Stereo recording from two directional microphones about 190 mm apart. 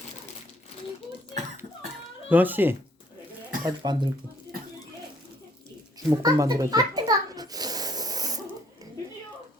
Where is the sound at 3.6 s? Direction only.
25° right (ahead or behind).